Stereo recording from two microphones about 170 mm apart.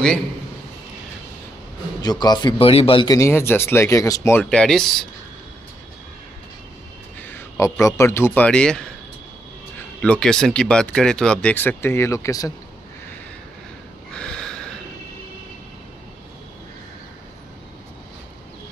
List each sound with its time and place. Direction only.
2.0 s a man's voice: 25° left (ahead or behind); by 4.8 s 5° left (ahead or behind)
7.2 s a sound: 10° left (ahead or behind)
7.8 s speech: 15° left (ahead or behind)
10.0 s speech: 5° left (ahead or behind)
14.1 s snort: 5° left (ahead or behind)